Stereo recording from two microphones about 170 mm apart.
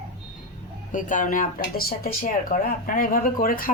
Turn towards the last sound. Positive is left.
turn(degrees=55)  # may be behind; listen again after turning